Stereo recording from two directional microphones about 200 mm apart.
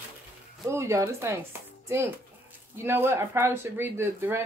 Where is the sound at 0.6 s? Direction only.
15° right (ahead or behind).